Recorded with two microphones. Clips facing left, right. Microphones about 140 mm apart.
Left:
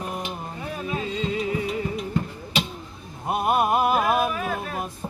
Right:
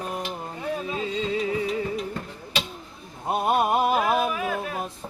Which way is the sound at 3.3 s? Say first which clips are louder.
Even; 30° right (ahead or behind).